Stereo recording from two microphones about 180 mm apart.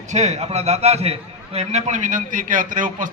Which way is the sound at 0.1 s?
40° right (ahead or behind).